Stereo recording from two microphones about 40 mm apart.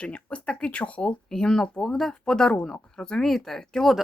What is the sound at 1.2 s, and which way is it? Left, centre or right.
Speech, centre.